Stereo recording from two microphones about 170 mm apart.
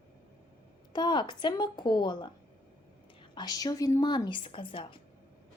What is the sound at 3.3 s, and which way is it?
Speech, 25° left (ahead or behind).